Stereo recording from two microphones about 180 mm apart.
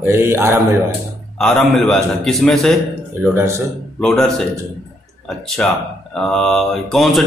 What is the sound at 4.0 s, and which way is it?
Speech, 5° left (ahead or behind).